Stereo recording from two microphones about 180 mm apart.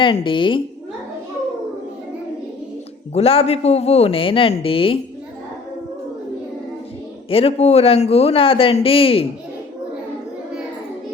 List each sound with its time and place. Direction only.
0.0 s a woman's voice: 30° left (ahead or behind)
3.2 s a man's voice: 35° left (ahead or behind)
7.3 s a man's voice: 30° left (ahead or behind)